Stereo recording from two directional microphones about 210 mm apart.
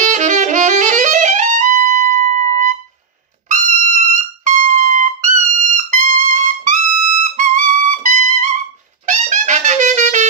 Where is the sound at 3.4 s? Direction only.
35° right (ahead or behind).